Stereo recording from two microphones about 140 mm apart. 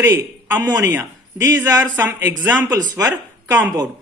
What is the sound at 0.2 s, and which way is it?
A woman's voice, 25° right (ahead or behind).